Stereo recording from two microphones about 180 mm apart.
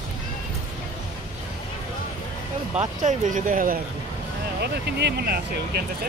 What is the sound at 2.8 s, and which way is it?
Speech, 45° right (ahead or behind).